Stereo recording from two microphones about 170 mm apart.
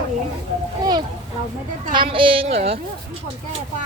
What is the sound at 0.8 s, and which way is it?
A woman's voice, 25° right (ahead or behind).